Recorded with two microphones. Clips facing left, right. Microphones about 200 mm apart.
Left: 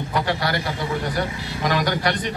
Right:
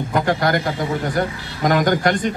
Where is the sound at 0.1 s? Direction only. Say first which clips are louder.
Right 5 dB; 50° right (ahead or behind).